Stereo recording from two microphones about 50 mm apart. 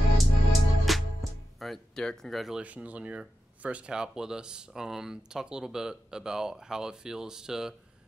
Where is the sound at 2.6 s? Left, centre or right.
Right.